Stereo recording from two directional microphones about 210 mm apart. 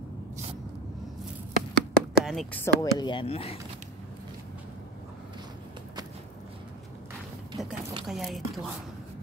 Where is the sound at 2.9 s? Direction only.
20° left (ahead or behind).